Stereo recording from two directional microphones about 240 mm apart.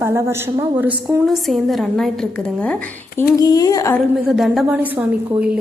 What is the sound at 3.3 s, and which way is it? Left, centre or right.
Speech, centre.